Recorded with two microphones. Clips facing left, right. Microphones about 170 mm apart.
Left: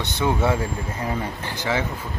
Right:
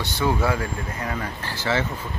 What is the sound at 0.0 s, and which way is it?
Speech, 20° left (ahead or behind).